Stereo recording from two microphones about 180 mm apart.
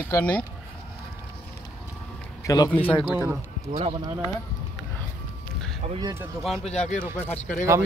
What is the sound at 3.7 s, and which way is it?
Speech, 35° right (ahead or behind).